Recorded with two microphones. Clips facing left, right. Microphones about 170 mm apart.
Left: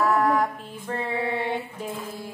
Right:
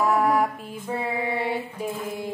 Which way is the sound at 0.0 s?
10° right (ahead or behind).